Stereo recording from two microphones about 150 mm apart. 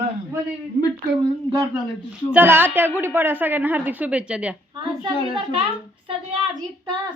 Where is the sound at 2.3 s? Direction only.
15° right (ahead or behind).